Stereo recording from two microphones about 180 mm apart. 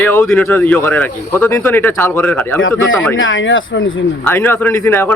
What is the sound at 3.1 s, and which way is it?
Speech, 90° left.